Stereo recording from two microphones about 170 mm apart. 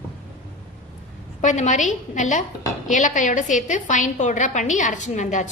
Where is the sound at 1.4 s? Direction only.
45° left (ahead or behind).